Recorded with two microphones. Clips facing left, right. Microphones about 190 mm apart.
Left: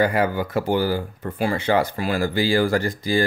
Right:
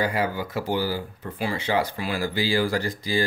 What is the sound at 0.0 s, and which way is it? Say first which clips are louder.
Speech: left 5 dB; 55° left (ahead or behind).